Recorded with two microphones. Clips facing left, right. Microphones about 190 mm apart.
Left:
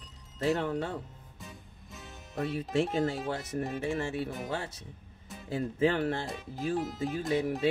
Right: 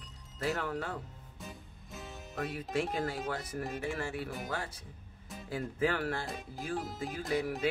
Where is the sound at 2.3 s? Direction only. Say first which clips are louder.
Left 5 dB; 30° left (ahead or behind).